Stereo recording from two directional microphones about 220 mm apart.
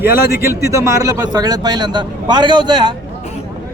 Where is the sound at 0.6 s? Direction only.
15° right (ahead or behind).